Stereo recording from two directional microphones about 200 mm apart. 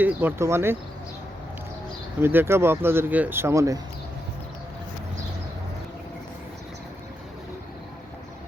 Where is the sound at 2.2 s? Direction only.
10° right (ahead or behind).